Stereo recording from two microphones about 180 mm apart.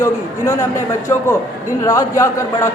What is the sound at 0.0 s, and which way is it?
A man's voice, 15° left (ahead or behind).